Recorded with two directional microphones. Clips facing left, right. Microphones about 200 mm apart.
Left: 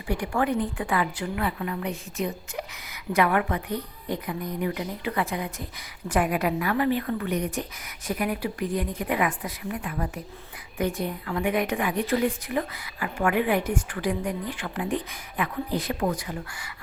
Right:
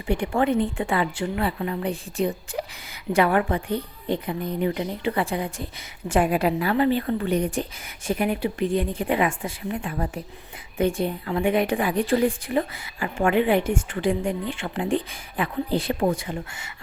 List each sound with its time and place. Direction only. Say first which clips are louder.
0.1 s a woman's voice: right 4 dB; 25° right (ahead or behind)